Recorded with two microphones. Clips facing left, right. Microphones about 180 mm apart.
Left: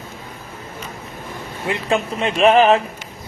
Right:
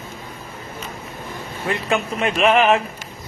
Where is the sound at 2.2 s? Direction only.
35° left (ahead or behind).